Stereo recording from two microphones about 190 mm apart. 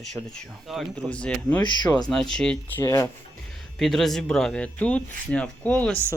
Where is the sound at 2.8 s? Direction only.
15° left (ahead or behind).